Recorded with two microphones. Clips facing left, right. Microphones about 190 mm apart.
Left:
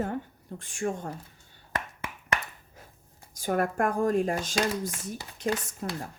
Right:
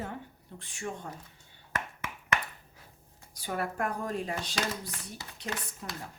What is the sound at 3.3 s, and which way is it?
Speech, 50° left (ahead or behind).